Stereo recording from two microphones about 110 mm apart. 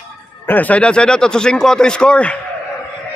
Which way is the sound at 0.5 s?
15° left (ahead or behind).